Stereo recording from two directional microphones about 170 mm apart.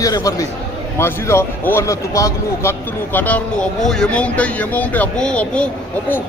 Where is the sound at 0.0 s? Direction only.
20° left (ahead or behind).